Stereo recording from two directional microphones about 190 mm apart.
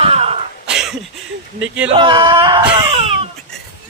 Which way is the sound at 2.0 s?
25° right (ahead or behind).